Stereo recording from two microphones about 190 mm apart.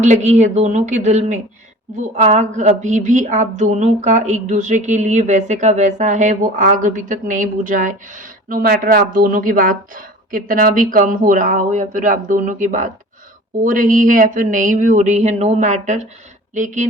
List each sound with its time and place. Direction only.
0.0 s a woman's voice: 40° right (ahead or behind)